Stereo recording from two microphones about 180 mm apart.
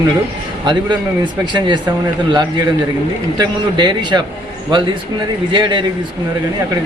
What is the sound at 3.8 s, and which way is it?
Speech, 25° right (ahead or behind).